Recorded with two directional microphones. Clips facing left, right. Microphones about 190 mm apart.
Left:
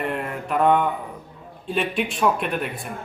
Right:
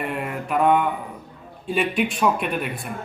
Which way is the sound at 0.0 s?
5° right (ahead or behind).